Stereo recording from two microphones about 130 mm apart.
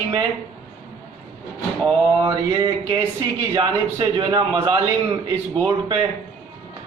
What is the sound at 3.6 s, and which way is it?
A man's voice, 40° right (ahead or behind).